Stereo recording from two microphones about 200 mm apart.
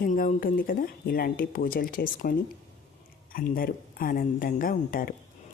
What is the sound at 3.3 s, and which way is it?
Speech, 45° left (ahead or behind).